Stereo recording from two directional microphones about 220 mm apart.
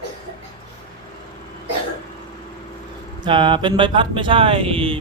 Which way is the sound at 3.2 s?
20° right (ahead or behind).